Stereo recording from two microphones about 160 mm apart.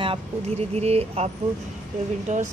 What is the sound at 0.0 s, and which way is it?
Speech, 35° right (ahead or behind).